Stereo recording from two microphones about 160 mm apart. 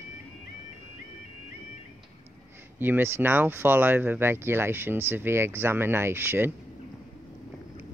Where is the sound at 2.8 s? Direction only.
15° right (ahead or behind).